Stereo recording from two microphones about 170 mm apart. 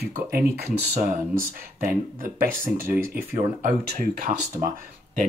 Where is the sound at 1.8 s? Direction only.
55° right (ahead or behind).